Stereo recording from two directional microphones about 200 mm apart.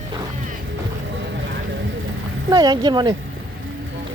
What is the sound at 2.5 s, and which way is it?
Speech, 20° right (ahead or behind).